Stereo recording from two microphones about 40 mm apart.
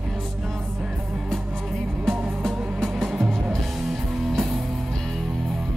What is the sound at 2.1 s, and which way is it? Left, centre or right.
Music, centre.